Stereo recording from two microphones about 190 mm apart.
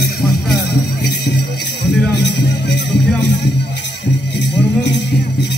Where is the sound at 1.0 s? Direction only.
60° left (ahead or behind).